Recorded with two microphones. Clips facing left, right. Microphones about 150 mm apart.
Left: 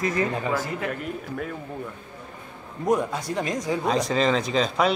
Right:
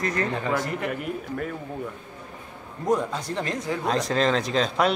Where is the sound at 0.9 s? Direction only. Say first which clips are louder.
Right 1 dB; 5° right (ahead or behind).